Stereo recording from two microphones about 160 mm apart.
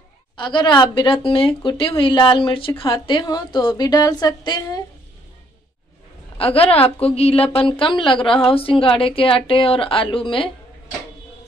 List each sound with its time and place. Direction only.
0.4 s a woman's voice: 30° left (ahead or behind)
6.3 s a woman's voice: 35° left (ahead or behind)